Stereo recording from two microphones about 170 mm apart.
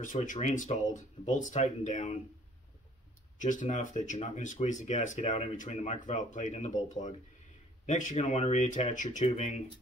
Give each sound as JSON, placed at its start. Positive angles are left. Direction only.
{"t": 0.0, "sound": "speech", "side_deg": 50}
{"t": 3.3, "sound": "speech", "side_deg": 45}